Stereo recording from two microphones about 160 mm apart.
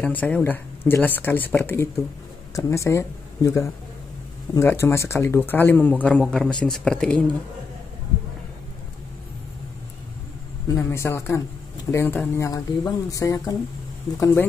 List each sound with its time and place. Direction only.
0.0 s a man's voice: 10° left (ahead or behind)
10.7 s a man's voice: 15° left (ahead or behind)